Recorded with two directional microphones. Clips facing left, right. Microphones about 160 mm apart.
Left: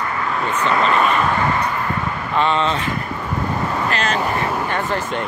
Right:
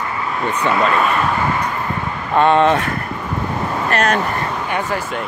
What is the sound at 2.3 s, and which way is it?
Speech, 55° right (ahead or behind).